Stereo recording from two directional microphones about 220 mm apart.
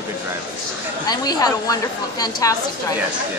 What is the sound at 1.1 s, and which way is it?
A woman's voice, 15° left (ahead or behind).